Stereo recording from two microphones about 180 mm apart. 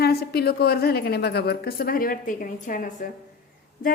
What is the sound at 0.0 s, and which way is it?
A woman's voice, 60° left (ahead or behind).